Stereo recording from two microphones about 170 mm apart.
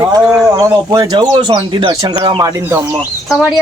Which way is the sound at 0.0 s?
20° right (ahead or behind).